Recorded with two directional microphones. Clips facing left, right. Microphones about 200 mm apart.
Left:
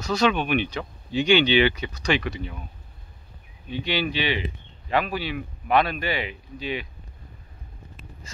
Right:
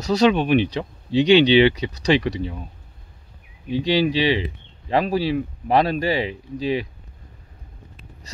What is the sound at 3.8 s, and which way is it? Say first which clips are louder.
Speech: right 7 dB; 35° right (ahead or behind).